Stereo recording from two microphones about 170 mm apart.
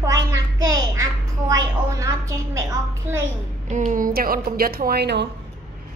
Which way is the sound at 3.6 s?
45° right (ahead or behind).